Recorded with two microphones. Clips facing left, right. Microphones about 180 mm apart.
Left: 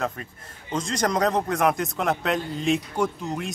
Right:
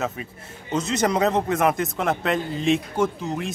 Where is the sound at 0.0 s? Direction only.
5° right (ahead or behind).